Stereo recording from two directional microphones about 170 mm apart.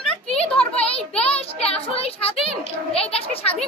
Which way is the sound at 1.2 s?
35° left (ahead or behind).